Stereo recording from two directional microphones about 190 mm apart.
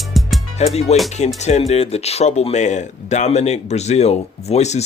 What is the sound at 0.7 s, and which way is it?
Speech, 35° left (ahead or behind).